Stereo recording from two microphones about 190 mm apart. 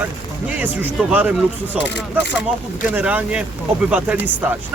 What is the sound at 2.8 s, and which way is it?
Speech, 10° right (ahead or behind).